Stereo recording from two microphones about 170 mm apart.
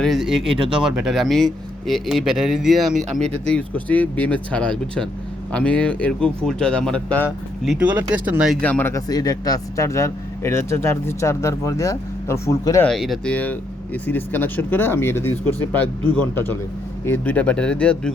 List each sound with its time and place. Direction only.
0.0 s speech: centre (ahead or behind)
3.5 s speech: 10° left (ahead or behind); by 8.5 s 10° right (ahead or behind)
8.6 s speech: 10° left (ahead or behind)
12.9 s speech: centre (ahead or behind)